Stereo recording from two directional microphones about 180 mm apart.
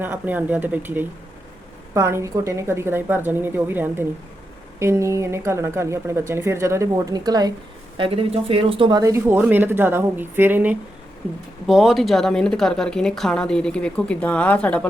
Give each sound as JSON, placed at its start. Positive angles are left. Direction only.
{"t": 0.0, "sound": "a woman's voice", "side_deg": -10}